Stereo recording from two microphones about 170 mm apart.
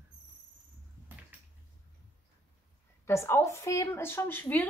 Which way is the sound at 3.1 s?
15° left (ahead or behind).